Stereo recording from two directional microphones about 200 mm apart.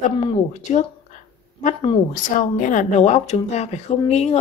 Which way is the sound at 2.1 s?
40° left (ahead or behind).